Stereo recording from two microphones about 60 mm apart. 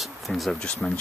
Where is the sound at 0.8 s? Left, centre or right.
Centre.